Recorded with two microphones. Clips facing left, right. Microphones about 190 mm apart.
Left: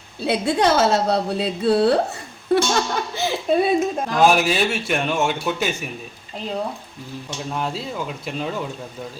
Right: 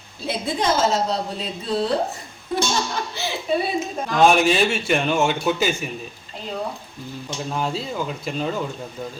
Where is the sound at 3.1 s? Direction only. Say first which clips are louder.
Left 4 dB; 50° left (ahead or behind).